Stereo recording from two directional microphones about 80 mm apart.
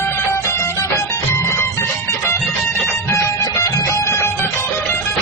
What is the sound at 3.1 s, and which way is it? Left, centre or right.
Music, left.